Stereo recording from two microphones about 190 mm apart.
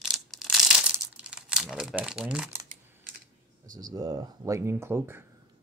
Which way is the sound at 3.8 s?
20° right (ahead or behind).